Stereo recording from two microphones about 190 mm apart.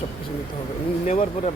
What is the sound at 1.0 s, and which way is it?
Speech, 35° left (ahead or behind).